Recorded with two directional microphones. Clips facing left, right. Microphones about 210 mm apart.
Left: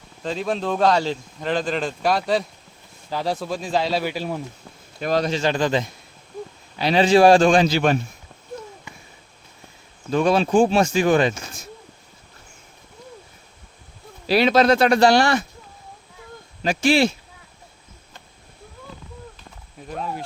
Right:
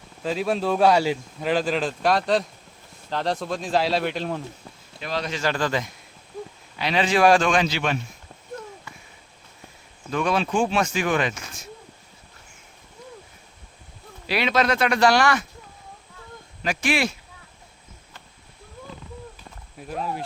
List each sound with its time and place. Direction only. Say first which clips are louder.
0.2 s speech: right 1 dB; 5° right (ahead or behind)
4.9 s speech: left 8 dB; 45° left (ahead or behind)
5.3 s speech: left 4 dB; 20° left (ahead or behind)
6.7 s speech: left 6 dB; 35° left (ahead or behind)
10.1 s speech: left 5 dB; 35° left (ahead or behind)
14.3 s speech: left 6 dB; 35° left (ahead or behind)
16.6 s speech: left 6 dB; 30° left (ahead or behind)
19.9 s speech: even; centre (ahead or behind)